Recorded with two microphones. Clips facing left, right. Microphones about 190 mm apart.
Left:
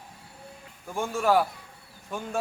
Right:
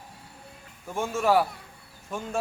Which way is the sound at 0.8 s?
Centre (ahead or behind).